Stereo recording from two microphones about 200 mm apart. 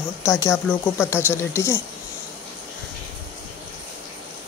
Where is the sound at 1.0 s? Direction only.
10° left (ahead or behind).